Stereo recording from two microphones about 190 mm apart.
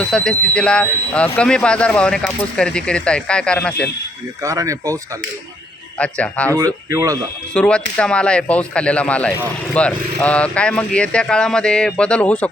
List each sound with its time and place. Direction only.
0.0 s speech: 5° left (ahead or behind)
4.4 s speech: 15° right (ahead or behind)
6.0 s speech: 5° left (ahead or behind)
6.9 s speech: 15° right (ahead or behind)
7.5 s speech: 5° left (ahead or behind)